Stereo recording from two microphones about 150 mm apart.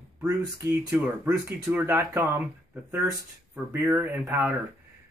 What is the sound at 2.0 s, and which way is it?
Speech, 25° right (ahead or behind).